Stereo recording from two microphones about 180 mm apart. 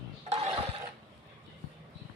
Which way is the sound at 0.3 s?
35° right (ahead or behind).